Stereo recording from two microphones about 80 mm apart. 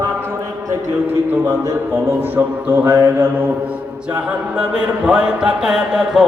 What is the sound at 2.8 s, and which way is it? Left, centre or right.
Mantra, right.